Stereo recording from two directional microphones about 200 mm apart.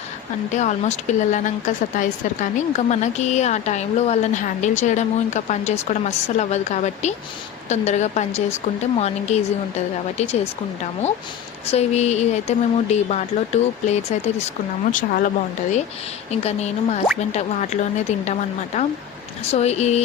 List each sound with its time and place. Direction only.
0.5 s a woman's voice: 35° left (ahead or behind)
11.7 s a woman's voice: 35° left (ahead or behind)
16.3 s a woman's voice: 30° left (ahead or behind)